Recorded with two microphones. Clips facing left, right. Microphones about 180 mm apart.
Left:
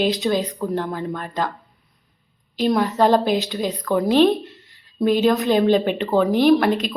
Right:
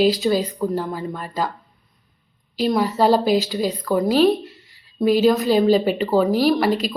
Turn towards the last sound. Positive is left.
turn(degrees=0)  # may be behind; listen again after turning